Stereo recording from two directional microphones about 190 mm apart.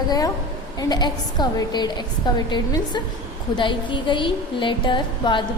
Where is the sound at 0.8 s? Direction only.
20° left (ahead or behind).